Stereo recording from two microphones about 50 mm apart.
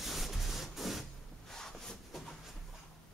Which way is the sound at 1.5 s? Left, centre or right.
Centre.